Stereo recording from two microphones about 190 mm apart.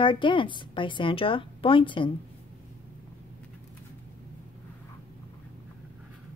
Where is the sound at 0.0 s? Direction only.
25° left (ahead or behind).